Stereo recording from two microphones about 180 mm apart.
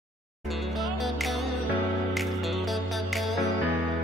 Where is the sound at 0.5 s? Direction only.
Centre (ahead or behind).